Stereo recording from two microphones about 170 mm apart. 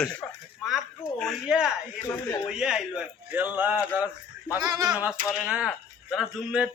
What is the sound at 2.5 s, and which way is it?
Speech, 5° right (ahead or behind).